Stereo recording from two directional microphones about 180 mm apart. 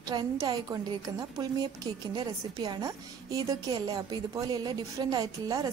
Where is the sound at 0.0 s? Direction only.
20° right (ahead or behind).